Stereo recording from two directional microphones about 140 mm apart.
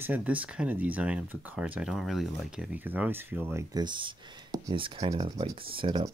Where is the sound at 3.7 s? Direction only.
35° right (ahead or behind).